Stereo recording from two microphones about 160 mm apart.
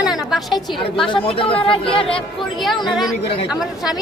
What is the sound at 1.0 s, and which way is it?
Speech, 35° left (ahead or behind).